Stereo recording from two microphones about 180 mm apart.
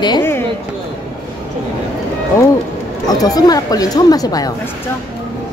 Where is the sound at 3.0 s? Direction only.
20° left (ahead or behind).